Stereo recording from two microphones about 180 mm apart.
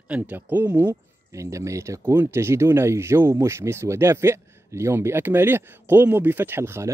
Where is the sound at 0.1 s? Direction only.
10° right (ahead or behind).